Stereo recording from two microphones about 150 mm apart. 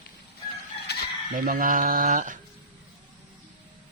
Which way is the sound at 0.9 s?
90° left.